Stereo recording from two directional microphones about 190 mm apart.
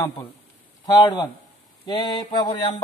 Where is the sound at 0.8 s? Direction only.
20° left (ahead or behind).